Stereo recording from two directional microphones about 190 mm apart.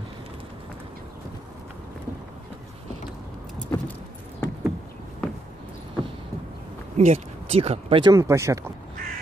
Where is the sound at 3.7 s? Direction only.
15° left (ahead or behind).